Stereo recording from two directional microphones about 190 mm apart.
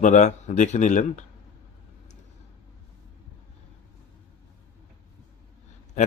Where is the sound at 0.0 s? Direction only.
40° left (ahead or behind).